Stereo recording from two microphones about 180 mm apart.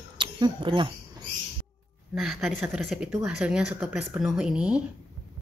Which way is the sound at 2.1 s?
Centre (ahead or behind).